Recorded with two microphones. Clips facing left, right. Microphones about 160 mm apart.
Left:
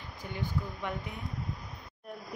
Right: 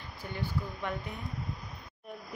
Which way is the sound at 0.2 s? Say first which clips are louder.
Even; 15° left (ahead or behind).